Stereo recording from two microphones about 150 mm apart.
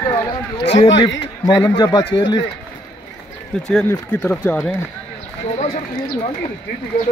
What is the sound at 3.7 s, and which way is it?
Speech, 10° left (ahead or behind).